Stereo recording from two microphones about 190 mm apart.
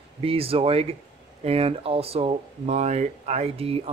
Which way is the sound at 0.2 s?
30° right (ahead or behind).